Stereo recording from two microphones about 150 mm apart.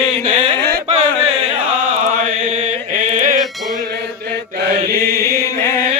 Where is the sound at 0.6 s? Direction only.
90° right.